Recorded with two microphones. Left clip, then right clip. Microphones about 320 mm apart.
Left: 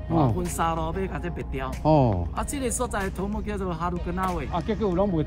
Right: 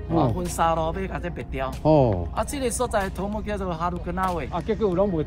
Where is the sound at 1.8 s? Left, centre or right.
Centre.